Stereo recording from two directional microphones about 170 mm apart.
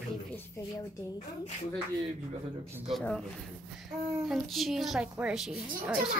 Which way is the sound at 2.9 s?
5° left (ahead or behind).